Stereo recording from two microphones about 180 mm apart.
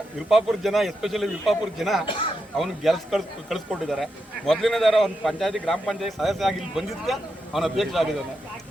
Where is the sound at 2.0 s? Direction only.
30° left (ahead or behind).